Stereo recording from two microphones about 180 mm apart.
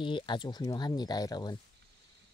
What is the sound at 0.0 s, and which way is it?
Speech, 25° left (ahead or behind).